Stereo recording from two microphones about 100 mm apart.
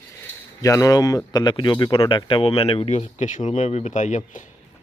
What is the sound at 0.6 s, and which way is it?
Speech, 35° left (ahead or behind).